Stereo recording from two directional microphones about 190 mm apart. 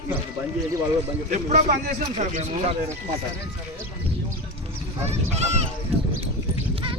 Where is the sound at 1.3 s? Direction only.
40° right (ahead or behind).